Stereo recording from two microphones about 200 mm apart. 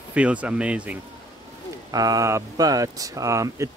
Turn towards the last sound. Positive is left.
turn(degrees=-15)  # may be behind; listen again after turning